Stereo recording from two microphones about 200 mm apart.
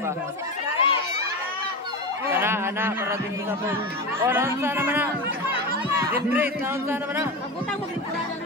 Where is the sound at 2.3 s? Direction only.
10° right (ahead or behind).